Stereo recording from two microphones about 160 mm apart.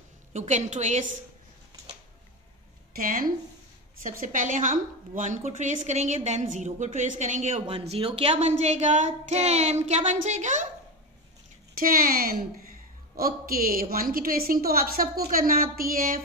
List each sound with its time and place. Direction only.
0.3 s a woman's voice: 45° right (ahead or behind)
2.9 s a woman's voice: 60° right (ahead or behind)
11.7 s a woman's voice: 65° right (ahead or behind)